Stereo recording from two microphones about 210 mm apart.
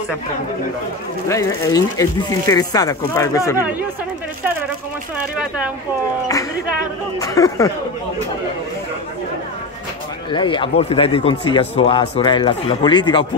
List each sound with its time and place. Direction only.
1.3 s speech: 15° left (ahead or behind)
7.2 s speech: 15° left (ahead or behind)
10.3 s speech: 25° left (ahead or behind)